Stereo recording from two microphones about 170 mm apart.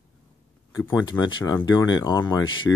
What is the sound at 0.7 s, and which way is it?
Speech, 20° left (ahead or behind).